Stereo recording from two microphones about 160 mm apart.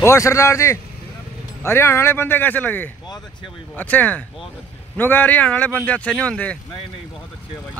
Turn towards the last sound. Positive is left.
turn(degrees=10)  # may be behind; listen again after turning